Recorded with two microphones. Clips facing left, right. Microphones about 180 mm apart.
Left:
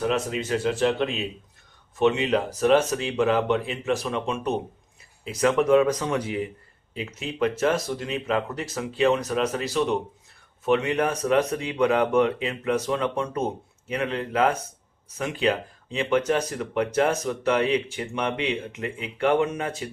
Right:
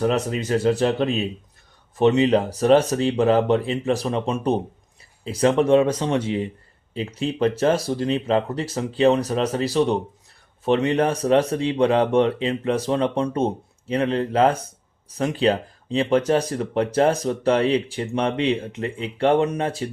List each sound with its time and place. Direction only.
0.0 s speech: 40° right (ahead or behind)